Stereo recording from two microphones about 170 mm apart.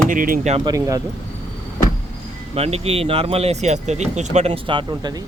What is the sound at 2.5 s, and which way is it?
Speech, 35° right (ahead or behind).